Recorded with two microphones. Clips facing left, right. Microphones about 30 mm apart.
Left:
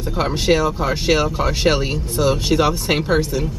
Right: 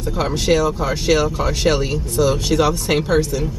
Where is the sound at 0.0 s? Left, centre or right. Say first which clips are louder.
Even; centre.